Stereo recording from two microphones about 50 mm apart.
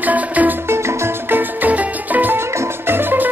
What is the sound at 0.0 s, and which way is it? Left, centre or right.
Music, right.